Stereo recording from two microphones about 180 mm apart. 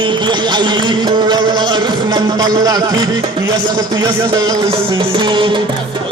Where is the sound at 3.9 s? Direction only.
20° right (ahead or behind).